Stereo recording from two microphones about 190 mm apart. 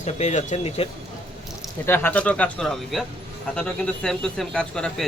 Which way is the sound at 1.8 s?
10° left (ahead or behind).